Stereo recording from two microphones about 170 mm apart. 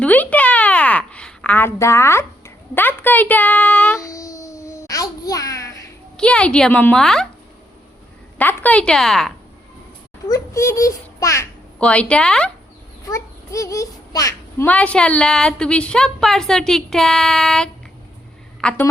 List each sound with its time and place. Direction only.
0.0 s a sound: 10° left (ahead or behind)
4.0 s a sound: 20° left (ahead or behind)
6.1 s a woman's voice: 5° left (ahead or behind)
8.4 s a woman's voice: 10° left (ahead or behind)
10.2 s a child's voice: 20° left (ahead or behind)
11.8 s a woman's voice: 5° left (ahead or behind)
13.1 s a child's voice: 20° left (ahead or behind)
14.7 s a woman's voice: 10° left (ahead or behind)